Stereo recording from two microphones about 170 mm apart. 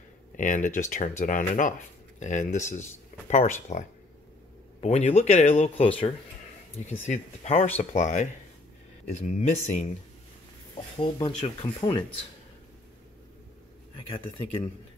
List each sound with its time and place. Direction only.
0.4 s speech: 50° left (ahead or behind)
4.7 s speech: 40° left (ahead or behind)
11.0 s speech: 30° left (ahead or behind)